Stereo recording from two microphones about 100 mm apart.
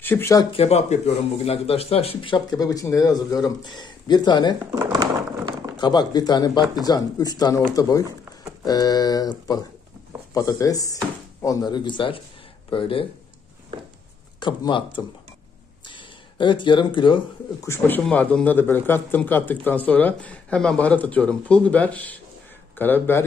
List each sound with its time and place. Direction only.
0.0 s speech: 20° left (ahead or behind)
0.5 s speech: 85° left
2.3 s speech: 40° left (ahead or behind)
4.9 s a sound: 45° right (ahead or behind)
5.8 s speech: 45° left (ahead or behind)
8.6 s speech: 40° left (ahead or behind)
10.3 s speech: 35° left (ahead or behind)
11.7 s speech: 50° left (ahead or behind)
14.4 s speech: 50° left (ahead or behind)
15.9 s a sound: 55° left (ahead or behind)
17.6 s speech: 20° left (ahead or behind)